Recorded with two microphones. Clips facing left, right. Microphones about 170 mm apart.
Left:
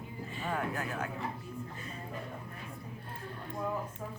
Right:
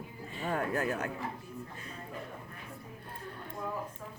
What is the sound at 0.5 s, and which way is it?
Speech, 40° right (ahead or behind).